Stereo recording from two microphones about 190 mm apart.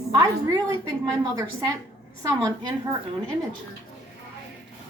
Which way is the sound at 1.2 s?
20° right (ahead or behind).